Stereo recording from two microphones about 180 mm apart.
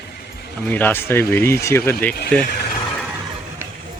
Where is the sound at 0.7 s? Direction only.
10° left (ahead or behind).